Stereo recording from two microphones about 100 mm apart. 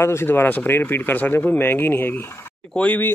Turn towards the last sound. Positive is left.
turn(degrees=15)  # may be behind; listen again after turning